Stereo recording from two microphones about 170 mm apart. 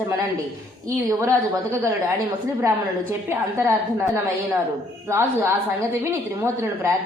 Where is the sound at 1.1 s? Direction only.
20° right (ahead or behind).